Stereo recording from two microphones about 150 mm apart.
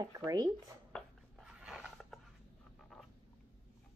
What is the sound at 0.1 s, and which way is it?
Speech, 25° right (ahead or behind).